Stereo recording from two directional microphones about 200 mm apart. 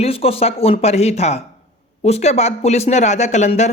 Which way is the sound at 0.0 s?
30° left (ahead or behind).